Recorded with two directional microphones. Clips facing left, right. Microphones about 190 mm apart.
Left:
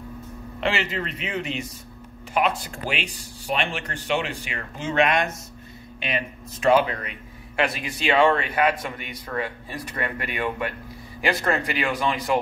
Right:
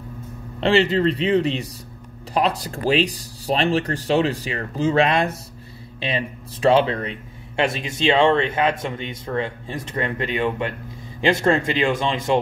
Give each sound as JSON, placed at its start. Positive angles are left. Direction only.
{"t": 0.6, "sound": "speech", "side_deg": -30}